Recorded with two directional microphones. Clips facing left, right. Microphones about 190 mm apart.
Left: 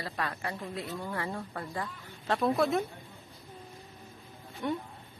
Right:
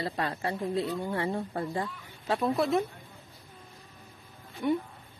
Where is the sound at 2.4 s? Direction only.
Centre (ahead or behind).